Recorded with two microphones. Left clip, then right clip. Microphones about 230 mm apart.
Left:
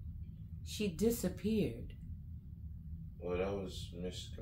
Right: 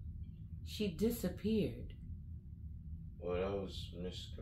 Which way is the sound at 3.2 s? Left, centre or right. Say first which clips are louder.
Left 1 dB; left.